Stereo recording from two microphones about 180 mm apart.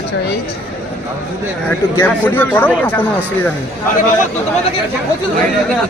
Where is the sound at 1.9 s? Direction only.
10° left (ahead or behind).